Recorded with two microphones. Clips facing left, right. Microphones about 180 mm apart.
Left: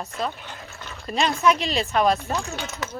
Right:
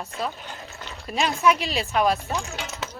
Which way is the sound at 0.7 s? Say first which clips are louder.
Even; 15° right (ahead or behind).